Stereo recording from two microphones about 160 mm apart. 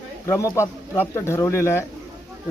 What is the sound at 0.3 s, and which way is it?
Speech, 20° left (ahead or behind).